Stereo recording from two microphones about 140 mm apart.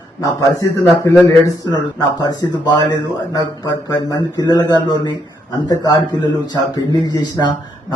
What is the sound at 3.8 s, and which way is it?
Speech, 30° left (ahead or behind).